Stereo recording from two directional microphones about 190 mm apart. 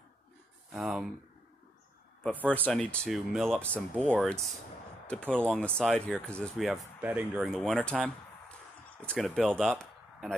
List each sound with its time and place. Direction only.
0.7 s speech: centre (ahead or behind)
2.2 s speech: 10° left (ahead or behind)
9.6 s a sound: centre (ahead or behind)